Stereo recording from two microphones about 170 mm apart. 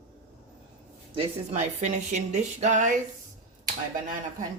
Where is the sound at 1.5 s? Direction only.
45° right (ahead or behind).